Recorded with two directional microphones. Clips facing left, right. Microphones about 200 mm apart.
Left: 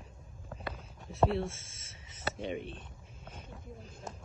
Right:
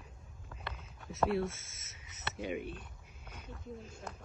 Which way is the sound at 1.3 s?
25° left (ahead or behind).